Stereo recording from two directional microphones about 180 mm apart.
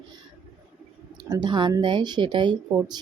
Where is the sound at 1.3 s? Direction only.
25° right (ahead or behind).